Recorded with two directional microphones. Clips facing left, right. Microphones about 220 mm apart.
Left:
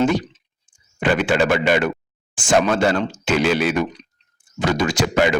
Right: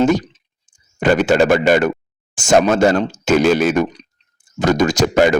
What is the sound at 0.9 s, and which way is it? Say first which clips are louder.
Speech: right 5 dB; 40° right (ahead or behind).